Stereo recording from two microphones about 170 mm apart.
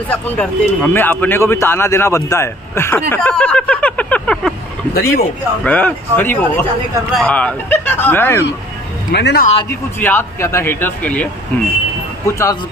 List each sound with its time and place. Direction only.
0.1 s speech: 10° left (ahead or behind)
4.9 s speech: 65° left (ahead or behind)
5.6 s speech: 10° left (ahead or behind)
9.1 s speech: 75° left (ahead or behind)
9.7 s speech: 15° left (ahead or behind)
12.3 s speech: 15° left (ahead or behind)